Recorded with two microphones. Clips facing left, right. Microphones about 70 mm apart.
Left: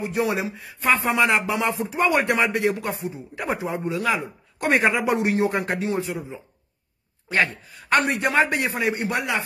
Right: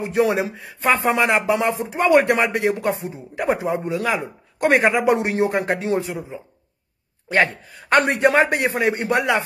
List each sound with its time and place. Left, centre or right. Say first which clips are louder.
0.0 s speech: right 5 dB; right
7.2 s a man's voice: right 4 dB; right